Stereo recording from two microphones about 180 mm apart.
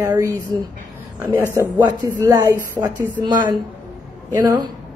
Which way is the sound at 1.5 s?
20° right (ahead or behind).